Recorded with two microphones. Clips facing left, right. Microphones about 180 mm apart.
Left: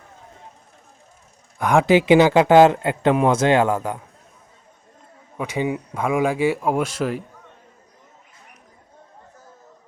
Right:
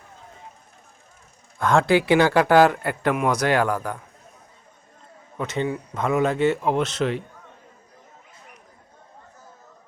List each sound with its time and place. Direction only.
1.5 s a man's voice: 15° left (ahead or behind)
5.4 s speech: 10° left (ahead or behind)